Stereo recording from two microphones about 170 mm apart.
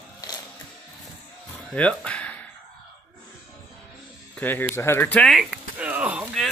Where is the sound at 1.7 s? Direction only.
5° left (ahead or behind).